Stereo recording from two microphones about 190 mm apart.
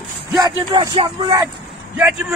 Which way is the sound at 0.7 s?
25° right (ahead or behind).